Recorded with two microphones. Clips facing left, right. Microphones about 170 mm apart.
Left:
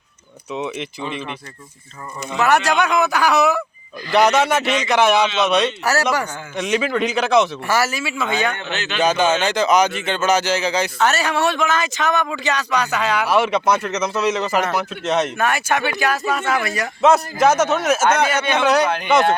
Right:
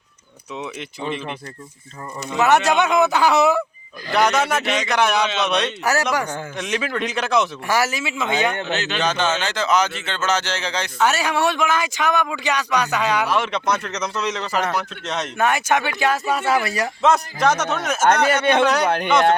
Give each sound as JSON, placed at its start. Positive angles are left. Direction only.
{"t": 0.5, "sound": "a man's voice", "side_deg": 0}
{"t": 2.4, "sound": "speech", "side_deg": -20}
{"t": 4.1, "sound": "a man's voice", "side_deg": 0}
{"t": 7.7, "sound": "speech", "side_deg": -15}
{"t": 8.5, "sound": "speech", "side_deg": -40}
{"t": 9.0, "sound": "a man's voice", "side_deg": 10}
{"t": 10.9, "sound": "speech", "side_deg": -10}
{"t": 13.2, "sound": "a man's voice", "side_deg": 10}
{"t": 15.4, "sound": "speech", "side_deg": -20}
{"t": 17.0, "sound": "a man's voice", "side_deg": 5}